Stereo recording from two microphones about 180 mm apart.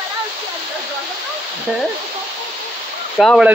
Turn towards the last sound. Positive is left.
turn(degrees=0)  # may be behind; listen again after turning